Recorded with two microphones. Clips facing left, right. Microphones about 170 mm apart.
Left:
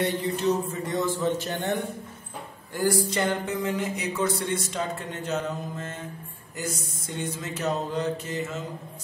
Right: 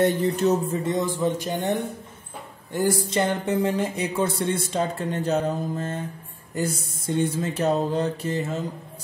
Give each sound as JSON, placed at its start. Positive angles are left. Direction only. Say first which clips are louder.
{"t": 0.0, "sound": "mantra", "louder": "right 6 dB", "side_deg": -50}
{"t": 0.8, "sound": "a man's voice", "louder": "left 1 dB", "side_deg": -20}
{"t": 6.5, "sound": "mantra", "louder": "right 6 dB", "side_deg": -30}